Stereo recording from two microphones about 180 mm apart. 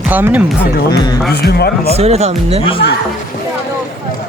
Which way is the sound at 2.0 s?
35° right (ahead or behind).